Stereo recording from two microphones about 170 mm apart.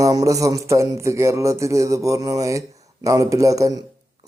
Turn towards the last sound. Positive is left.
turn(degrees=-20)  # may be behind; listen again after turning